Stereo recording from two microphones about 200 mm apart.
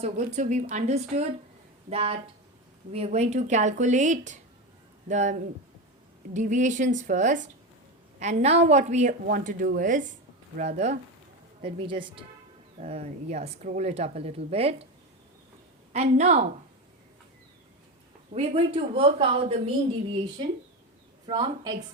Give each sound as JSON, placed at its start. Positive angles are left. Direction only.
{"t": 0.0, "sound": "a woman's voice", "side_deg": -35}
{"t": 15.9, "sound": "speech", "side_deg": -35}
{"t": 18.3, "sound": "a woman's voice", "side_deg": -30}
{"t": 21.2, "sound": "a woman's voice", "side_deg": -25}